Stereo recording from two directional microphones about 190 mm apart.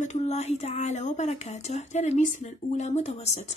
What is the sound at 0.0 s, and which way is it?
A woman's voice, 35° left (ahead or behind).